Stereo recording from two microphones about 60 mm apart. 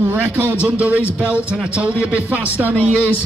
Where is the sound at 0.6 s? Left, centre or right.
Right.